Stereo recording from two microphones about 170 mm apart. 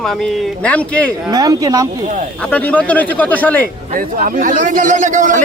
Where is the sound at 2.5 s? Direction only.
10° left (ahead or behind).